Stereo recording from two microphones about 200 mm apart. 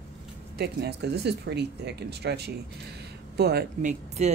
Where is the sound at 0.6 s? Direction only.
55° right (ahead or behind).